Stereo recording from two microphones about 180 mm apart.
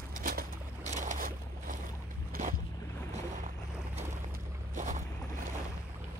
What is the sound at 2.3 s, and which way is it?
Boat, 50° right (ahead or behind).